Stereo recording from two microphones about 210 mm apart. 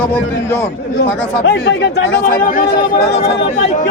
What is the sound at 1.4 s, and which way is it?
Speech, 55° left (ahead or behind).